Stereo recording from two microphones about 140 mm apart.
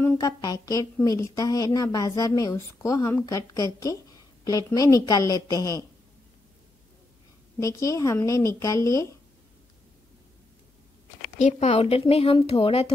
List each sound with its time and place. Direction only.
0.2 s a woman's voice: 25° left (ahead or behind)
7.5 s a woman's voice: 25° left (ahead or behind)
11.3 s speech: 60° left (ahead or behind)
11.7 s speech: 45° left (ahead or behind)